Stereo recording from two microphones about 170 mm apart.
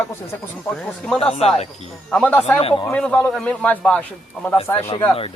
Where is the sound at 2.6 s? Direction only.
35° left (ahead or behind).